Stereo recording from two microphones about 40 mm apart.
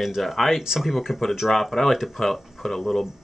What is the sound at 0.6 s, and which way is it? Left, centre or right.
Speech, centre.